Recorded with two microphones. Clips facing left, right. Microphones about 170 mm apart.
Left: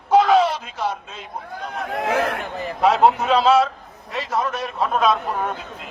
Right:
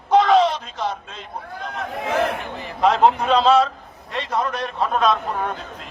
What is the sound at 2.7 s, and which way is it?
A man's voice, 5° left (ahead or behind).